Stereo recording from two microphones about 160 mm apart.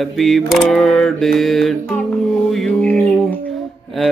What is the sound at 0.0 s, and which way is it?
Mantra, centre (ahead or behind).